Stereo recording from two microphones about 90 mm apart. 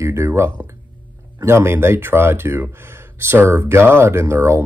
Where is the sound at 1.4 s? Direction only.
30° right (ahead or behind).